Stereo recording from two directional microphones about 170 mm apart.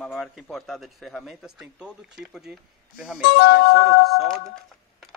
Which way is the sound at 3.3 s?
65° left (ahead or behind).